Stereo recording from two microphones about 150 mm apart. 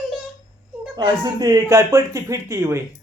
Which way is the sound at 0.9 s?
30° right (ahead or behind).